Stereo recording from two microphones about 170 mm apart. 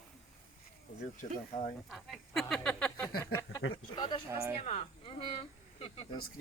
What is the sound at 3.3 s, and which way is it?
Speech, 20° left (ahead or behind).